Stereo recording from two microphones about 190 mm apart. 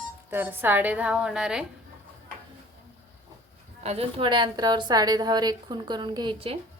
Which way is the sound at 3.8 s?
30° right (ahead or behind).